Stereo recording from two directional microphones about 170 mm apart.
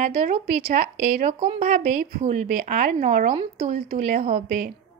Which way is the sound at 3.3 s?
35° right (ahead or behind).